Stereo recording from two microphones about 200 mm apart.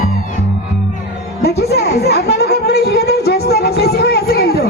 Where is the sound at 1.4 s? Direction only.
50° left (ahead or behind).